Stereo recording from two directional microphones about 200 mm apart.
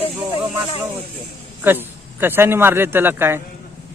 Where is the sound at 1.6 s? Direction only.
10° right (ahead or behind).